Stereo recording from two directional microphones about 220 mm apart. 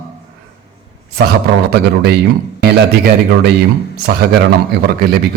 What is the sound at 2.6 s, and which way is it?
A man's voice, 45° right (ahead or behind).